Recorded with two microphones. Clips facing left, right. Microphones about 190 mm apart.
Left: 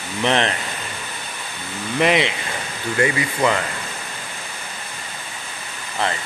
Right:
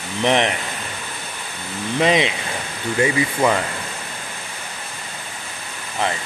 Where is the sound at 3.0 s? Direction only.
15° right (ahead or behind).